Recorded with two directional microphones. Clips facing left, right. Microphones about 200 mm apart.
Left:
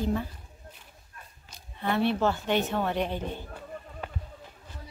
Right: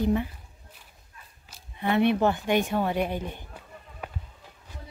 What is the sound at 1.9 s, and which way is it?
A woman's voice, 15° right (ahead or behind).